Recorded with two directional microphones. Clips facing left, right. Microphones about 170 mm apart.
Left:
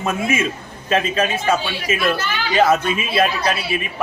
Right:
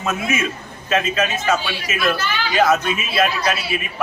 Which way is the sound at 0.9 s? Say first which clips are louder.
Left 1 dB; 30° left (ahead or behind).